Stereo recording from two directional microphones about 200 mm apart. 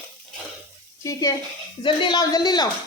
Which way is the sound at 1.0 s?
15° left (ahead or behind).